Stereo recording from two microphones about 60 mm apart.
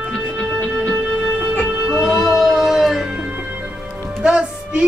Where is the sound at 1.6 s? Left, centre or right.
Centre.